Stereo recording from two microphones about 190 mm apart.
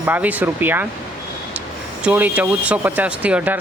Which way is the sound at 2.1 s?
10° right (ahead or behind).